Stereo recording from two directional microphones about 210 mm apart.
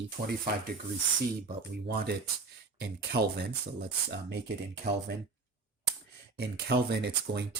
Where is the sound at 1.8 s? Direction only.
50° right (ahead or behind).